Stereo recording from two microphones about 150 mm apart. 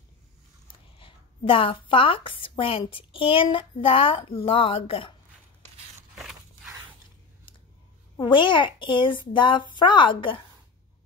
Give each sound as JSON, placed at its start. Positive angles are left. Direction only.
{"t": 0.9, "sound": "a woman's voice", "side_deg": 35}
{"t": 6.1, "sound": "a sound", "side_deg": 0}
{"t": 8.2, "sound": "a woman's voice", "side_deg": 30}